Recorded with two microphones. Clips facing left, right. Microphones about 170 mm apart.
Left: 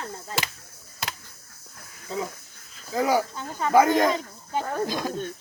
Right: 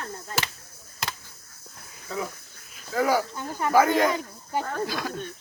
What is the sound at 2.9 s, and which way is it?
Speech, 15° left (ahead or behind).